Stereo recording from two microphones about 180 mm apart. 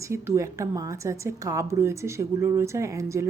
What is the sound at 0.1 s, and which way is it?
Speech, 15° right (ahead or behind).